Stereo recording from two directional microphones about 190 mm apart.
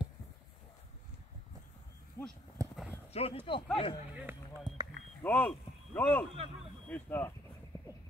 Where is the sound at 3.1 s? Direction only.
30° left (ahead or behind).